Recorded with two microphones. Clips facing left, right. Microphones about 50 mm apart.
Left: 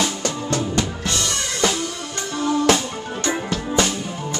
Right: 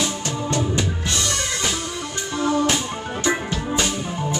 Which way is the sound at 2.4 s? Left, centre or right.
Centre.